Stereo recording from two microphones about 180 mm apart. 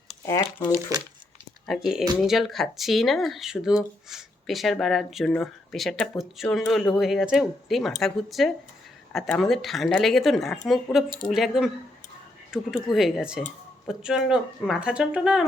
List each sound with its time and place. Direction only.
0.3 s speech: 20° left (ahead or behind)
1.6 s speech: centre (ahead or behind)